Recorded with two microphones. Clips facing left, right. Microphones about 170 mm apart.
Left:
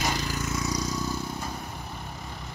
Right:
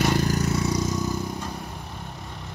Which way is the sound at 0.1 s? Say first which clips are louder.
Right 8 dB; 55° right (ahead or behind).